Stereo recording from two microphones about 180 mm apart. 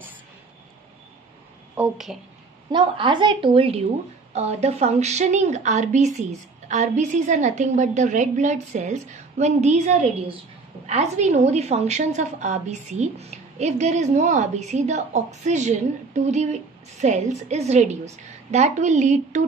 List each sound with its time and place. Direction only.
1.8 s a woman's voice: centre (ahead or behind)
2.7 s a woman's voice: 25° right (ahead or behind)